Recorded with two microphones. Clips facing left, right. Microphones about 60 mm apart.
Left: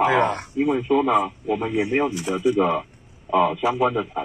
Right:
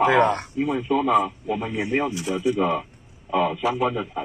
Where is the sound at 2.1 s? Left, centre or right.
Left.